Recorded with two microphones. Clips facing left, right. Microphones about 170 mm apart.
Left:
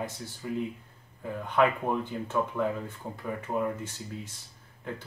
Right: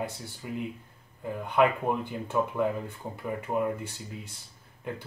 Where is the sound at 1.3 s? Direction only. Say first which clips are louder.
Right 1 dB; 15° right (ahead or behind).